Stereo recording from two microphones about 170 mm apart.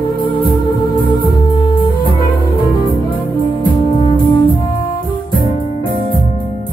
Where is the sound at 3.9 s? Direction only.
30° left (ahead or behind).